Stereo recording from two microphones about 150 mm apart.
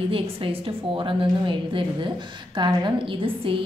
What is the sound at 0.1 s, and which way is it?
A woman's voice, 35° right (ahead or behind).